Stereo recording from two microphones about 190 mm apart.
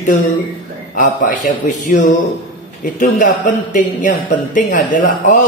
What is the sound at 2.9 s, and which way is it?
Speech, 45° left (ahead or behind).